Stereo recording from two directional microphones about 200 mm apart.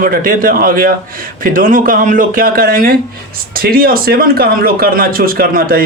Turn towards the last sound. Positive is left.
turn(degrees=-45)  # may be behind; listen again after turning